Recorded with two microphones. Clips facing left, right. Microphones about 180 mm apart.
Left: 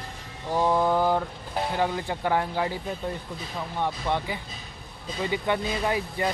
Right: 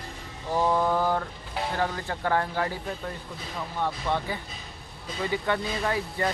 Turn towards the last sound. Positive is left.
turn(degrees=15)  # may be behind; listen again after turning